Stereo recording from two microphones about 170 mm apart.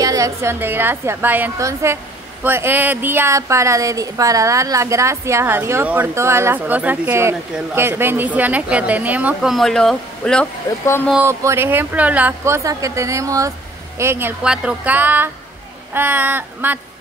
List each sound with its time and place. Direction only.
0.0 s a woman's voice: 20° right (ahead or behind); by 10.5 s 5° left (ahead or behind)
11.2 s a woman's voice: 15° right (ahead or behind)